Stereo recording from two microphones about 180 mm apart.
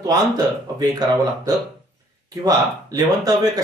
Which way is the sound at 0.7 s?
20° right (ahead or behind).